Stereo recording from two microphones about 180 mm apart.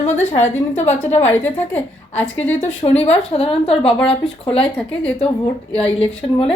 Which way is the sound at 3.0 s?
35° left (ahead or behind).